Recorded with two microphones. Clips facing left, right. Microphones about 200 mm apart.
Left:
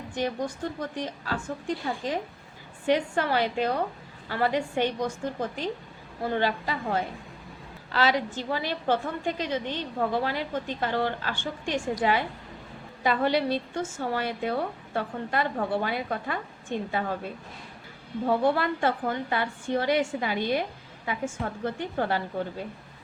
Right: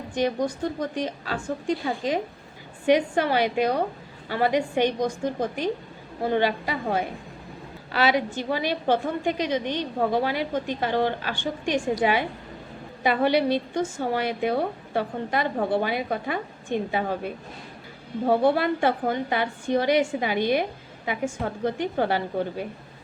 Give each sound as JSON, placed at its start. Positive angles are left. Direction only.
{"t": 0.1, "sound": "a woman's voice", "side_deg": -15}
{"t": 7.9, "sound": "a woman's voice", "side_deg": -15}
{"t": 13.2, "sound": "a woman's voice", "side_deg": -15}
{"t": 15.5, "sound": "a woman's voice", "side_deg": -35}
{"t": 15.8, "sound": "a woman's voice", "side_deg": -15}
{"t": 18.3, "sound": "a woman's voice", "side_deg": -35}
{"t": 18.5, "sound": "a woman's voice", "side_deg": -15}